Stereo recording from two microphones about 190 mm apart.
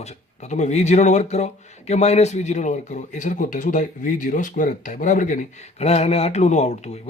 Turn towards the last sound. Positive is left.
turn(degrees=35)  # may be behind; listen again after turning